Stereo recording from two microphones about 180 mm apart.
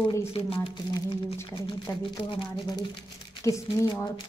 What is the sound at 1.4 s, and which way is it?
Speech, 15° left (ahead or behind).